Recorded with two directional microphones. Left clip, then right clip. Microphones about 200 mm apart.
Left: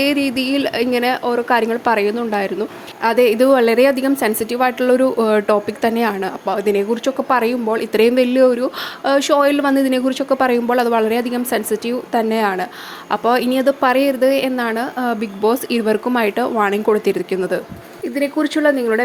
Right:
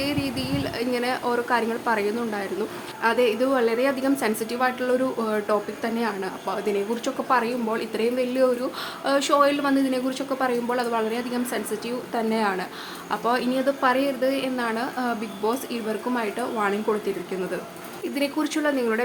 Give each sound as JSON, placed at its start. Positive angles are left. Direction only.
{"t": 0.0, "sound": "a woman's voice", "side_deg": 35}
{"t": 18.1, "sound": "a woman's voice", "side_deg": 25}